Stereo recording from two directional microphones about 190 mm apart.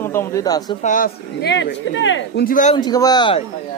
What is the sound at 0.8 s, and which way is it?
Speech, 45° left (ahead or behind).